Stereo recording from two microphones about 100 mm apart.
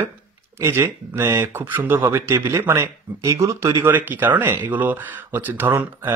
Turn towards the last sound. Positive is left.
turn(degrees=-20)  # may be behind; listen again after turning